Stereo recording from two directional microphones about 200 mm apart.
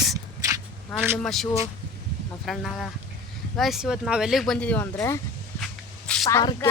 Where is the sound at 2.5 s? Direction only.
Centre (ahead or behind).